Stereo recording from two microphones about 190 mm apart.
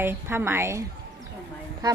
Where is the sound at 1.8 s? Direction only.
20° right (ahead or behind).